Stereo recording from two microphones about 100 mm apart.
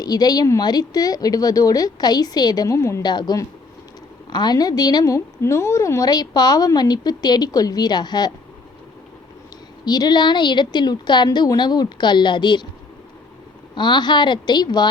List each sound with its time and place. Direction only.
0.0 s a woman's voice: 40° left (ahead or behind)
3.0 s a woman's voice: 45° left (ahead or behind)
9.8 s a woman's voice: 45° left (ahead or behind)
13.7 s a woman's voice: 50° left (ahead or behind)